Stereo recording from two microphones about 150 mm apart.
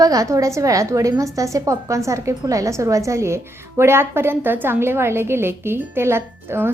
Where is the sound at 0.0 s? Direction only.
25° right (ahead or behind).